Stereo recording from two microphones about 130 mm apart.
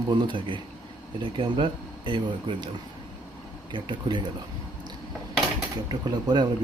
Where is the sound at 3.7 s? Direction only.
35° right (ahead or behind).